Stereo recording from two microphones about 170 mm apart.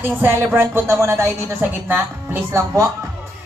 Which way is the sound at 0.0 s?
10° right (ahead or behind).